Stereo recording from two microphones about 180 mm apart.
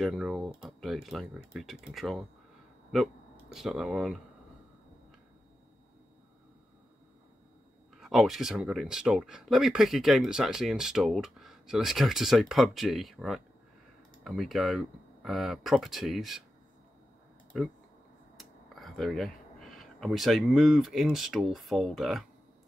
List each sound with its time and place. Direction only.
0.0 s speech: centre (ahead or behind)
3.5 s speech: centre (ahead or behind)
8.0 s speech: centre (ahead or behind)
18.4 s speech: centre (ahead or behind)